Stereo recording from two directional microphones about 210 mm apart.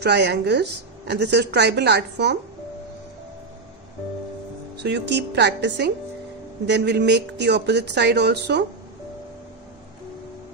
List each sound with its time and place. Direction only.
0.0 s a woman's voice: 50° right (ahead or behind)
4.7 s a woman's voice: 55° right (ahead or behind)